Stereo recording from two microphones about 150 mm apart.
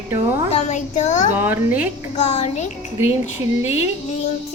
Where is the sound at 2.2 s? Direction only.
45° left (ahead or behind).